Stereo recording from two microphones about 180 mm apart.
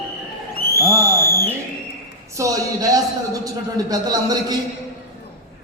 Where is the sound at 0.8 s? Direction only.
15° right (ahead or behind).